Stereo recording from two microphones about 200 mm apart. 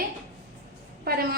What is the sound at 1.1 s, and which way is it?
Speech, 50° right (ahead or behind).